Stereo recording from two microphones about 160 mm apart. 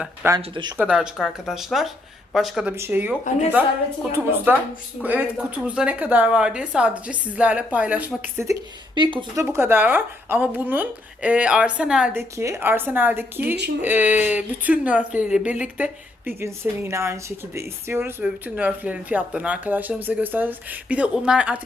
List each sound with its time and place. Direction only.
0.3 s speech: 25° right (ahead or behind)
0.8 s speech: 5° right (ahead or behind)
2.7 s speech: 15° right (ahead or behind)
9.0 s speech: 30° right (ahead or behind)
9.3 s speech: 15° right (ahead or behind)